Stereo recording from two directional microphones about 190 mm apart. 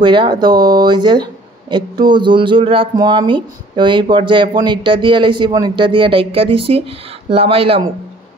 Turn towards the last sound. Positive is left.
turn(degrees=-30)  # may be behind; listen again after turning